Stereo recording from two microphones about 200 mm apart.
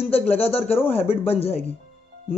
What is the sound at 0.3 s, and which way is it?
A woman's voice, 30° left (ahead or behind).